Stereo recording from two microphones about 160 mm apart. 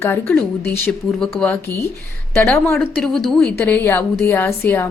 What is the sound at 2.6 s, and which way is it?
A woman's voice, 10° left (ahead or behind).